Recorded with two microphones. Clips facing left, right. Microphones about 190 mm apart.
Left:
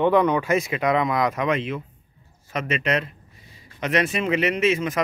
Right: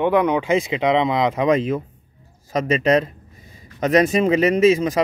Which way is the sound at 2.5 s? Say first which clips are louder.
Right 7 dB; 35° right (ahead or behind).